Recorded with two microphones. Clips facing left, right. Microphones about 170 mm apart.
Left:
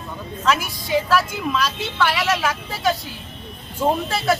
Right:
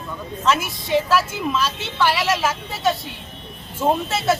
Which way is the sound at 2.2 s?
Centre (ahead or behind).